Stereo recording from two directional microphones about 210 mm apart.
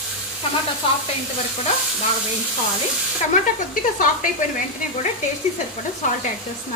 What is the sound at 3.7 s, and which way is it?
Speech, 40° left (ahead or behind).